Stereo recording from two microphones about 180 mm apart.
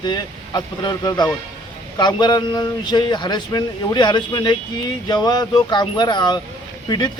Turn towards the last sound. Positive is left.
turn(degrees=25)  # may be behind; listen again after turning